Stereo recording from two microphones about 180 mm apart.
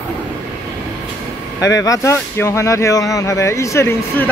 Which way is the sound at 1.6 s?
20° left (ahead or behind).